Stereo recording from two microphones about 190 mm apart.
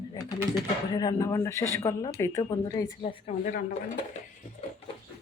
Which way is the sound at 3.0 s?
35° left (ahead or behind).